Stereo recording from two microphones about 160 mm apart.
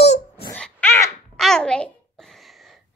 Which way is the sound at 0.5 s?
10° left (ahead or behind).